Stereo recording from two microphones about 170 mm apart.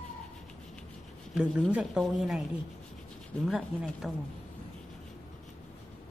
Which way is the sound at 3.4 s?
Centre (ahead or behind).